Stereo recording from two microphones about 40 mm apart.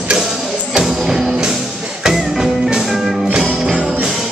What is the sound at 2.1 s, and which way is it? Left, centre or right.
Music, centre.